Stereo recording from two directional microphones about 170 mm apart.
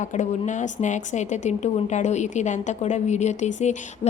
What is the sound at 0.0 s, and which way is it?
A woman's voice, 45° left (ahead or behind).